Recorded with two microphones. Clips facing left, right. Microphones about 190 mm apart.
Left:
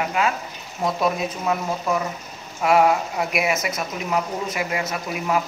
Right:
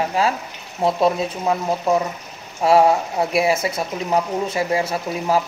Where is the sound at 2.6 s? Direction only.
30° right (ahead or behind).